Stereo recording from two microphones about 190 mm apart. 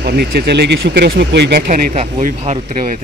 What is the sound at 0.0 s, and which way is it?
Speech, 55° right (ahead or behind).